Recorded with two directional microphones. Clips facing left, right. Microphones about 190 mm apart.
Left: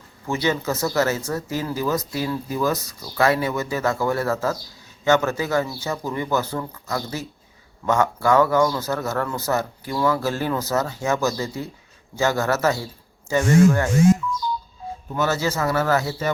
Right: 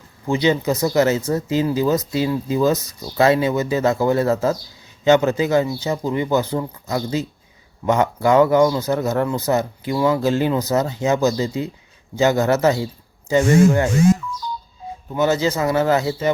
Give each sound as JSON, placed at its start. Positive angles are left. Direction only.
{"t": 0.3, "sound": "speech", "side_deg": -20}
{"t": 15.1, "sound": "speech", "side_deg": -20}